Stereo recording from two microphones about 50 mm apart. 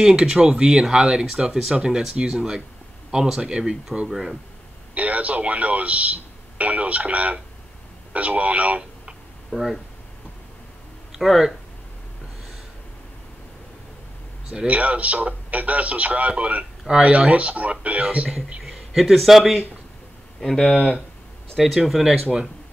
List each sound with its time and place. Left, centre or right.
0.0 s speech: centre
4.1 s speech: centre
4.9 s speech: right
9.5 s speech: centre
11.1 s speech: centre
14.7 s speech: right
18.6 s speech: centre
20.3 s speech: centre
21.5 s speech: centre